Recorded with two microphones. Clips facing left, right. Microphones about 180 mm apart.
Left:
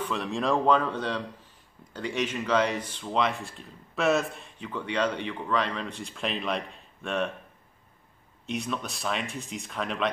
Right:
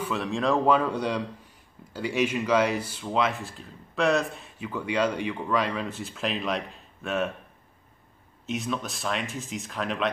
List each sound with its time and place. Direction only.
0.0 s speech: centre (ahead or behind)
8.5 s speech: centre (ahead or behind)